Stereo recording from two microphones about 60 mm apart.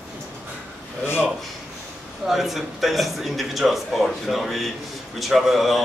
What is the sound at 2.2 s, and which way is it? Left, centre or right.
A man's voice, centre.